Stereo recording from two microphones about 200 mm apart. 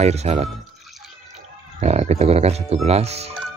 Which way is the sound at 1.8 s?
35° right (ahead or behind).